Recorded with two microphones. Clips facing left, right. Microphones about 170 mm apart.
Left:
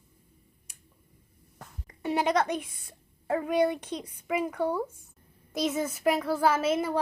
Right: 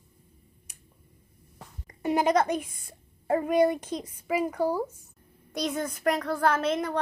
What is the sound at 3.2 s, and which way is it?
Speech, 40° right (ahead or behind).